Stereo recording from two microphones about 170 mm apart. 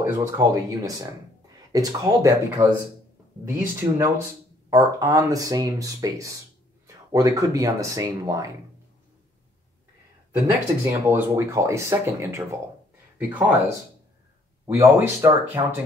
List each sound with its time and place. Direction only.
0.0 s speech: 15° right (ahead or behind)
10.4 s speech: 15° right (ahead or behind)
14.8 s speech: 15° right (ahead or behind)